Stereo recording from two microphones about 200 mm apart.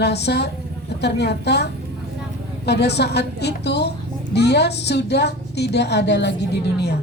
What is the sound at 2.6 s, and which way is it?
A woman's voice, 55° left (ahead or behind).